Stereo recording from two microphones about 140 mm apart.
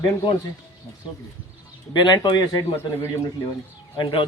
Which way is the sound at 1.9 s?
30° left (ahead or behind).